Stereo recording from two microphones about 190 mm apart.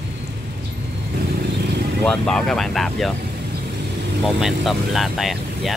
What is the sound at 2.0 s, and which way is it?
Speech, 5° left (ahead or behind).